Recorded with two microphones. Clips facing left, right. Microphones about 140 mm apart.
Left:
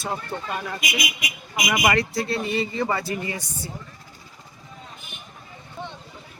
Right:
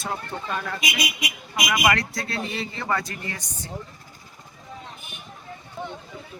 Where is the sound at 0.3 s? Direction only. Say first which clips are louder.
Left 2 dB; centre (ahead or behind).